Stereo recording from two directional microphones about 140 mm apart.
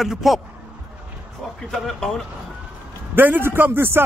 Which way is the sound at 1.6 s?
5° left (ahead or behind).